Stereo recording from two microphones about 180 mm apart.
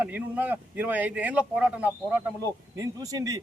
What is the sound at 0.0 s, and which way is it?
A man's voice, 10° right (ahead or behind).